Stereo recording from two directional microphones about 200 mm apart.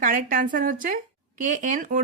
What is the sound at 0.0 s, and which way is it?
A woman's voice, 45° right (ahead or behind).